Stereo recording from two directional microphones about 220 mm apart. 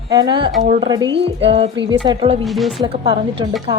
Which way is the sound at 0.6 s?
30° right (ahead or behind).